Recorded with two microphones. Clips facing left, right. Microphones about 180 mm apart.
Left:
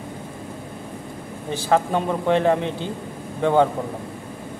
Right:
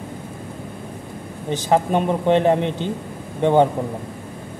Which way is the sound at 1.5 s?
20° right (ahead or behind).